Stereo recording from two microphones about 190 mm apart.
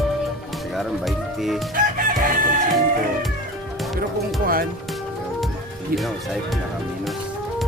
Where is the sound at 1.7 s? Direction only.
45° right (ahead or behind).